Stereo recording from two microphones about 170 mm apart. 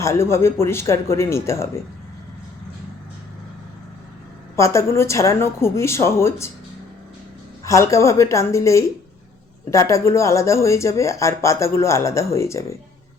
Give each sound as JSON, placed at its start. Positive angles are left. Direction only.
{"t": 0.0, "sound": "speech", "side_deg": 15}
{"t": 4.5, "sound": "speech", "side_deg": 15}
{"t": 7.6, "sound": "speech", "side_deg": 20}